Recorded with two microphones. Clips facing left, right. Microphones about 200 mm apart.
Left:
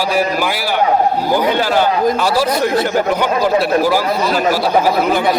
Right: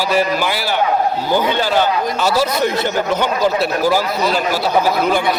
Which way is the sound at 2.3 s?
35° left (ahead or behind).